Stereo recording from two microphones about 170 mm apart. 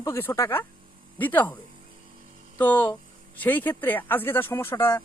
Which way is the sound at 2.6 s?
10° left (ahead or behind).